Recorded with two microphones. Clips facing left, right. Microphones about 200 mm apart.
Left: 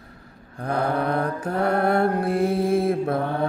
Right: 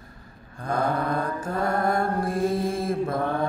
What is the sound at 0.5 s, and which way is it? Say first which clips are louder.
Mantra: left 2 dB; 65° left (ahead or behind).